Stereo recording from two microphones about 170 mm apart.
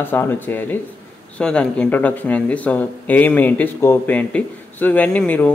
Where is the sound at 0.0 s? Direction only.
10° left (ahead or behind).